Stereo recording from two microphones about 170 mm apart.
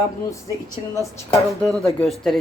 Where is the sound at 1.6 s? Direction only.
Centre (ahead or behind).